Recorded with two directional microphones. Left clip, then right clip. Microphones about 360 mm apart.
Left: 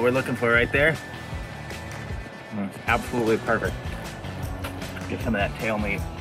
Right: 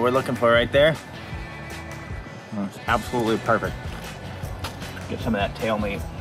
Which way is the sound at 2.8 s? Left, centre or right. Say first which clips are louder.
Even; centre.